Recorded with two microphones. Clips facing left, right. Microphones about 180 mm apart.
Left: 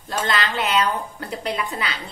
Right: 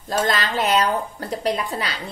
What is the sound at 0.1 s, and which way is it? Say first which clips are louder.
Speech: right 2 dB; 40° right (ahead or behind).